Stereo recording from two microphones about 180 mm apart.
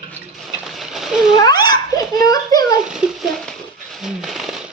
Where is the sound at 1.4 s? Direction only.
25° left (ahead or behind).